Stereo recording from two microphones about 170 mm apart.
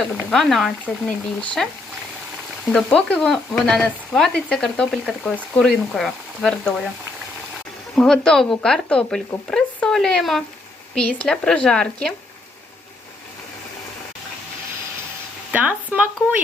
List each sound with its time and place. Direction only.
0.3 s sizzle: 5° left (ahead or behind)
2.7 s sizzle: 5° left (ahead or behind)
7.9 s sizzle: 5° left (ahead or behind)
15.5 s speech: 10° right (ahead or behind)